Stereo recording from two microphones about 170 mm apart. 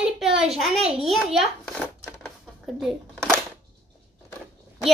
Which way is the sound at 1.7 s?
Centre (ahead or behind).